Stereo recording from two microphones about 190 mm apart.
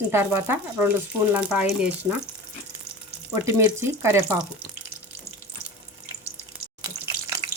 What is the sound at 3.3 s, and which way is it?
Speech, 15° right (ahead or behind).